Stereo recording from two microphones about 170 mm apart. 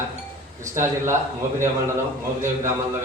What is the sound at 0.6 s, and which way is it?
Speech, 15° right (ahead or behind).